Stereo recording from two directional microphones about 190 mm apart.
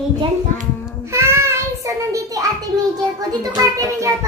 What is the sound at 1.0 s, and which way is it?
Child singing, 15° right (ahead or behind).